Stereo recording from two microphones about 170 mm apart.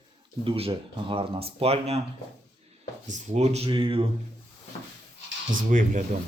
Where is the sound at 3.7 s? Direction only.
30° right (ahead or behind).